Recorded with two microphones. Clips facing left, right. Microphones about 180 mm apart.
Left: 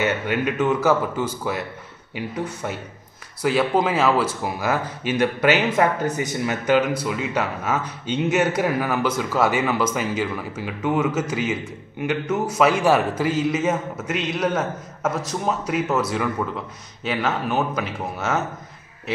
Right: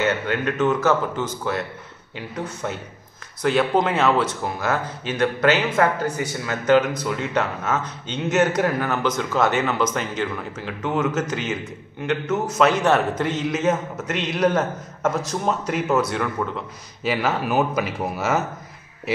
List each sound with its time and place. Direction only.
0.0 s speech: 15° left (ahead or behind)
12.5 s a man's voice: 10° left (ahead or behind)